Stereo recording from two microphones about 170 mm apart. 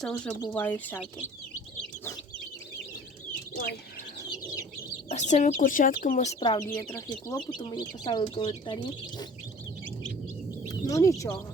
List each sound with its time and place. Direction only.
0.0 s speech: 5° left (ahead or behind)
3.5 s speech: 65° left (ahead or behind)
5.0 s speech: 45° left (ahead or behind)
6.4 s speech: 25° left (ahead or behind)
6.7 s speech: 10° left (ahead or behind)
7.5 s speech: 25° left (ahead or behind)
10.7 s speech: 20° left (ahead or behind)